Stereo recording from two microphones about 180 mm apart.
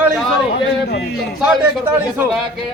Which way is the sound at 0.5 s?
70° left (ahead or behind).